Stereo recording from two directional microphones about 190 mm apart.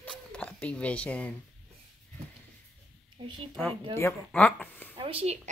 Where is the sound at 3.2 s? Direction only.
25° right (ahead or behind).